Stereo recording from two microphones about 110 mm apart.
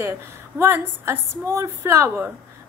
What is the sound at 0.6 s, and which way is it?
Speech, 25° right (ahead or behind).